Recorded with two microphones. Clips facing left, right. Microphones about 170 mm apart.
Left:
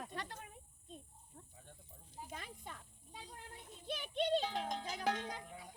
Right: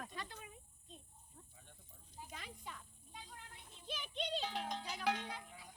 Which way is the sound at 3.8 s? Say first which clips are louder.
Left 6 dB; 55° left (ahead or behind).